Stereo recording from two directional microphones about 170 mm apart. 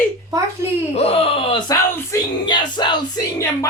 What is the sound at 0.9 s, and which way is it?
Speech, 35° left (ahead or behind).